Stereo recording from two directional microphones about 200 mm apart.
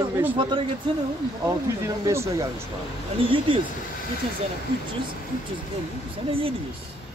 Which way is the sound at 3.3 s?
25° right (ahead or behind).